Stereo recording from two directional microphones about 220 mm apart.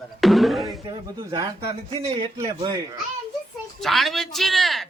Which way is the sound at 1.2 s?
20° right (ahead or behind).